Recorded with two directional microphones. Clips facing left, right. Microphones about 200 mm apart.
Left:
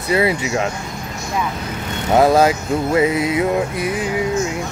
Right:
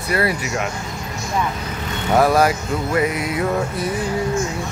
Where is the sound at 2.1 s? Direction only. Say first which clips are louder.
Left 3 dB; 25° left (ahead or behind).